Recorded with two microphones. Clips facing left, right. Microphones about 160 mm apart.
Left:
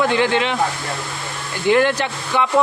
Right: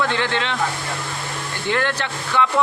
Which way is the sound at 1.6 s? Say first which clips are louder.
Left 7 dB; 15° left (ahead or behind).